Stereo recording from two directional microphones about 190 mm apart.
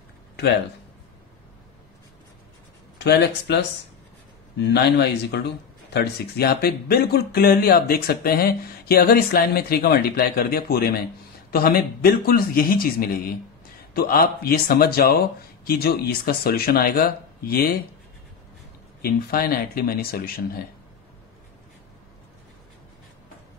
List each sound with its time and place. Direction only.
3.0 s speech: 60° left (ahead or behind)
18.9 s speech: 55° left (ahead or behind)